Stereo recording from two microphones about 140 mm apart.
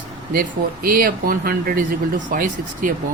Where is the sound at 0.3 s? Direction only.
90° right.